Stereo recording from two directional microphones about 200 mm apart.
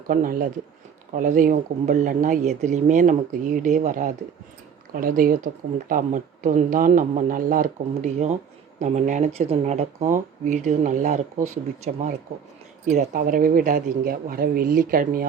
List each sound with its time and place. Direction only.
0.1 s speech: 45° right (ahead or behind)